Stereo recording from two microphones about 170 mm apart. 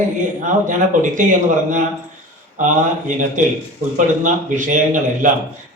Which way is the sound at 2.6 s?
50° right (ahead or behind).